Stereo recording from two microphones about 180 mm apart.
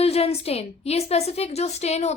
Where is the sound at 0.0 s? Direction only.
35° left (ahead or behind).